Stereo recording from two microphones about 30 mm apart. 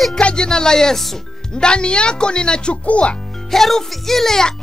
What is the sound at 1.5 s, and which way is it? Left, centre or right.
A woman's voice, left.